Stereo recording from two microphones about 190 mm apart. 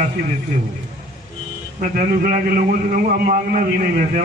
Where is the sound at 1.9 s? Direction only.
50° right (ahead or behind).